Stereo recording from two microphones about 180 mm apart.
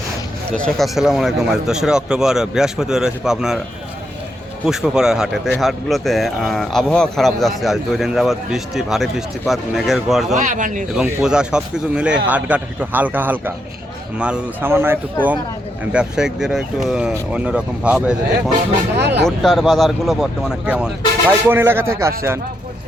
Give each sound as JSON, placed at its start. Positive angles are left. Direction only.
{"t": 0.5, "sound": "speech", "side_deg": 5}
{"t": 4.6, "sound": "speech", "side_deg": -5}
{"t": 10.3, "sound": "speech", "side_deg": -45}
{"t": 10.9, "sound": "a man's voice", "side_deg": -5}
{"t": 18.9, "sound": "speech", "side_deg": -70}
{"t": 19.4, "sound": "a man's voice", "side_deg": 0}